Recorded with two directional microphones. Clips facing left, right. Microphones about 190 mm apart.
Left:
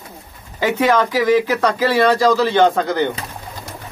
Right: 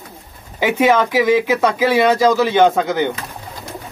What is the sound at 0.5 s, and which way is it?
Speech, 10° right (ahead or behind).